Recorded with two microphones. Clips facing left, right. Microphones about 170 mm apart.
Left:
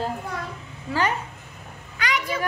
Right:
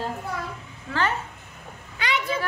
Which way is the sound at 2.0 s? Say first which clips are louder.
Even; 25° right (ahead or behind).